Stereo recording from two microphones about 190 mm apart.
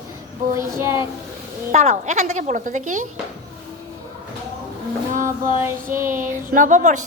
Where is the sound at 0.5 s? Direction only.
15° right (ahead or behind).